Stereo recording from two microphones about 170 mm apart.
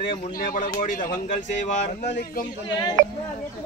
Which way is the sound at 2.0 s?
90° left.